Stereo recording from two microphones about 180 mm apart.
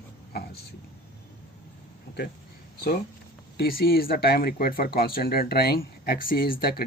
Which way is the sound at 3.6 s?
60° left (ahead or behind).